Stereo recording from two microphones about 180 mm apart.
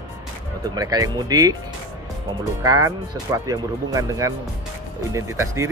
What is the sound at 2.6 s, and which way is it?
Speech, 20° right (ahead or behind).